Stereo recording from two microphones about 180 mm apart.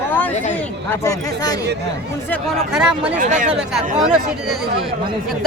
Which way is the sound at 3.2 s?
45° right (ahead or behind).